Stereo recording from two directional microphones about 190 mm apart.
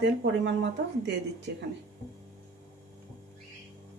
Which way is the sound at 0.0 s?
65° right (ahead or behind).